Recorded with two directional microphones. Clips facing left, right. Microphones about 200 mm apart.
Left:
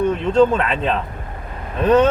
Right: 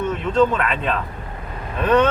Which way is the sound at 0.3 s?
30° left (ahead or behind).